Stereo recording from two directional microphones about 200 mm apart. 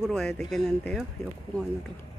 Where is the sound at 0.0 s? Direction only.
Centre (ahead or behind).